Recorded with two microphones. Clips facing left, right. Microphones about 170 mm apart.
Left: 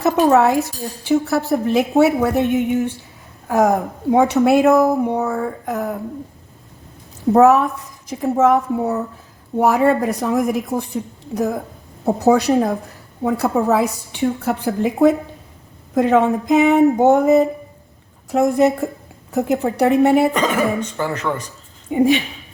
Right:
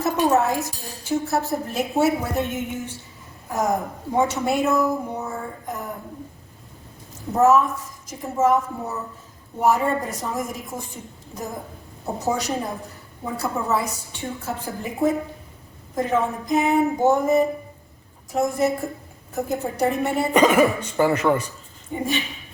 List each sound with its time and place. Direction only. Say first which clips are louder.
0.0 s a woman's voice: left 6 dB; 65° left (ahead or behind)
7.3 s a woman's voice: left 5 dB; 65° left (ahead or behind)
20.3 s speech: right 2 dB; 10° right (ahead or behind)
21.9 s a woman's voice: left 11 dB; 65° left (ahead or behind)